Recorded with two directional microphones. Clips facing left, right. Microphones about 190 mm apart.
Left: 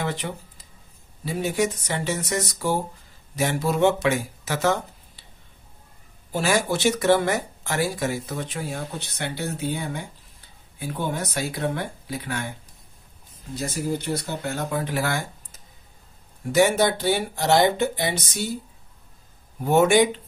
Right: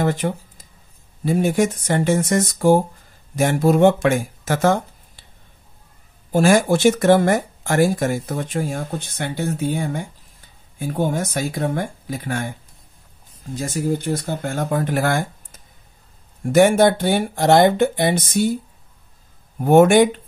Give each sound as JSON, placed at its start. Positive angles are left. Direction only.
{"t": 0.0, "sound": "speech", "side_deg": -45}
{"t": 6.3, "sound": "speech", "side_deg": -50}
{"t": 13.6, "sound": "speech", "side_deg": -50}
{"t": 19.6, "sound": "speech", "side_deg": -55}